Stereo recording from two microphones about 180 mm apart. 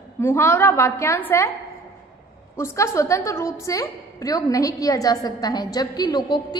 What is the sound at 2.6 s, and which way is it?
A woman's voice, 15° left (ahead or behind).